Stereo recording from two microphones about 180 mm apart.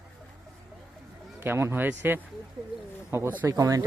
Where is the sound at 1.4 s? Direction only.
15° right (ahead or behind).